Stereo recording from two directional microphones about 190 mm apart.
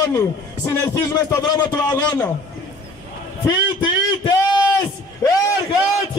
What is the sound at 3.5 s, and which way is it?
Speech, 25° left (ahead or behind).